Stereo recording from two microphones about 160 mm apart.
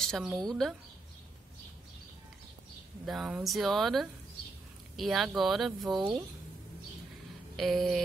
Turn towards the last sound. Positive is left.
turn(degrees=0)  # may be behind; listen again after turning